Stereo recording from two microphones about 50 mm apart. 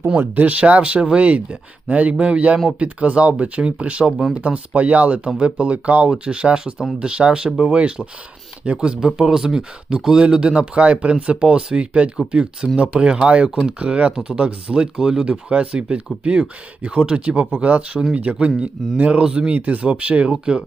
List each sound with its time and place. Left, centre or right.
0.2 s speech: right
19.2 s speech: centre
19.5 s speech: right